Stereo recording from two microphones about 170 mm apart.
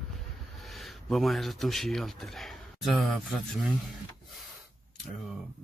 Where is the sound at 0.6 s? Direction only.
Centre (ahead or behind).